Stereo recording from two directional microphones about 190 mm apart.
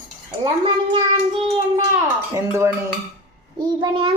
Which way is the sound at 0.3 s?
20° right (ahead or behind).